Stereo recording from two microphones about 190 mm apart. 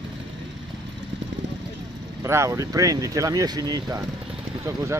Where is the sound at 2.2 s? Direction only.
15° right (ahead or behind).